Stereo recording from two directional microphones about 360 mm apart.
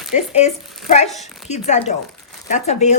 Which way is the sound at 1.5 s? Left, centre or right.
Centre.